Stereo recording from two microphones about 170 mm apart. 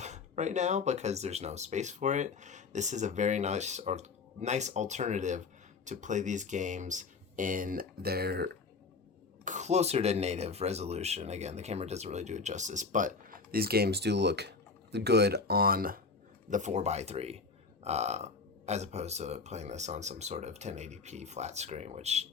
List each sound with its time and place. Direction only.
0.0 s speech: 45° right (ahead or behind); by 8.4 s 70° right (ahead or behind)
9.4 s speech: 45° right (ahead or behind)
16.5 s speech: 45° right (ahead or behind)